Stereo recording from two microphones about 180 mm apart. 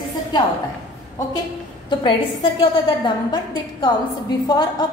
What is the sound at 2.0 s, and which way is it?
A woman's voice, 25° left (ahead or behind).